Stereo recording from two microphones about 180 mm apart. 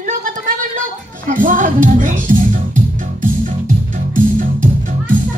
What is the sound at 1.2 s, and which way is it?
Speech, 45° right (ahead or behind).